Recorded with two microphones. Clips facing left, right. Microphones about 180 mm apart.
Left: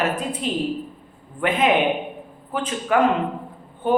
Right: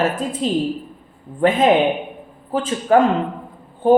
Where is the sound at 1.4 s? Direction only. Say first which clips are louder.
Right 5 dB; 30° right (ahead or behind).